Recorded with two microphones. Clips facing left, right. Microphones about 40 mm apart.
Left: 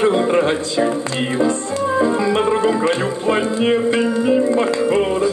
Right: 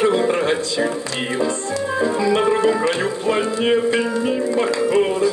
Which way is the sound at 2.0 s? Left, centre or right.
Left.